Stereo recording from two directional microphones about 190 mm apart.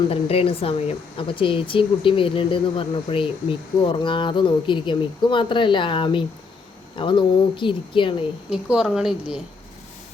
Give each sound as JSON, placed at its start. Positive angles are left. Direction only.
{"t": 0.1, "sound": "speech", "side_deg": 30}
{"t": 8.4, "sound": "a woman's voice", "side_deg": -5}